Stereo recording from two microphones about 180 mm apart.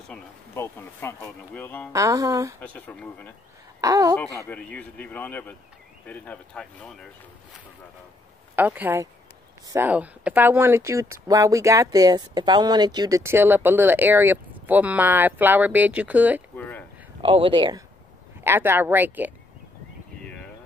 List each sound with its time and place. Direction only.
0.1 s speech: 15° left (ahead or behind)
1.9 s speech: 20° right (ahead or behind)
2.6 s speech: 10° left (ahead or behind)
3.8 s speech: 20° right (ahead or behind)
4.5 s speech: 5° left (ahead or behind)
8.5 s speech: 10° right (ahead or behind)
16.5 s a sound: 10° left (ahead or behind)
17.2 s speech: 30° right (ahead or behind)
18.4 s speech: 10° right (ahead or behind)